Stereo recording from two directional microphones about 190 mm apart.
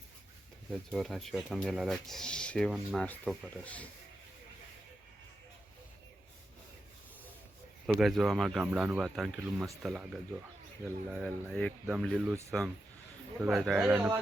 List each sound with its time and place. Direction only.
0.7 s speech: centre (ahead or behind)
7.9 s speech: centre (ahead or behind)